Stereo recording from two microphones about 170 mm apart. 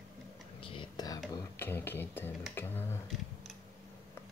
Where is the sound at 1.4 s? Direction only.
15° left (ahead or behind).